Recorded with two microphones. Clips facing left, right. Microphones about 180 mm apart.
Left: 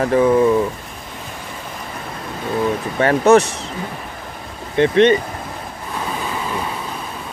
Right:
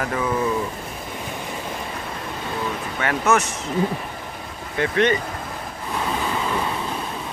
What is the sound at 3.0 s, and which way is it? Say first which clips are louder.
Speech: left 9 dB; 35° left (ahead or behind).